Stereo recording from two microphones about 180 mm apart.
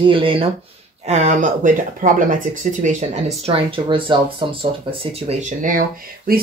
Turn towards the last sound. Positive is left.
turn(degrees=-50)  # may be behind; listen again after turning